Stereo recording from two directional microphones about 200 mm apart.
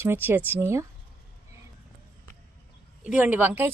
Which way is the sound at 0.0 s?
10° right (ahead or behind).